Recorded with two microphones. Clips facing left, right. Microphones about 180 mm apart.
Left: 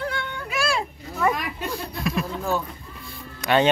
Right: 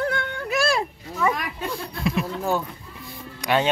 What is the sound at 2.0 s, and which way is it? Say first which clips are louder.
Speech: right 2 dB; 20° right (ahead or behind).